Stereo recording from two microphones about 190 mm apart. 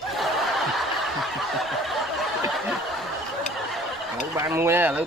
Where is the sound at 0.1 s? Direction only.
Centre (ahead or behind).